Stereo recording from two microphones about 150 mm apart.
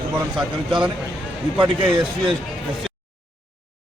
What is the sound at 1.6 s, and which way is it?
Speech, 35° right (ahead or behind).